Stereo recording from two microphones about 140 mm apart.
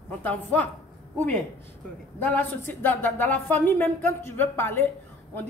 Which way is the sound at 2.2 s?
10° left (ahead or behind).